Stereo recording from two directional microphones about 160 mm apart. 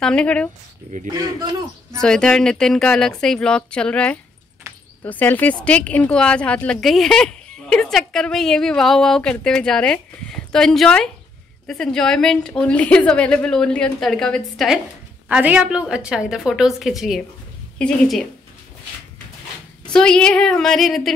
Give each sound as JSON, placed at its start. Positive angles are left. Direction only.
{"t": 0.0, "sound": "speech", "side_deg": 5}
{"t": 1.1, "sound": "a man's voice", "side_deg": -25}
{"t": 2.0, "sound": "speech", "side_deg": 5}
{"t": 15.2, "sound": "speech", "side_deg": -10}
{"t": 19.9, "sound": "speech", "side_deg": 5}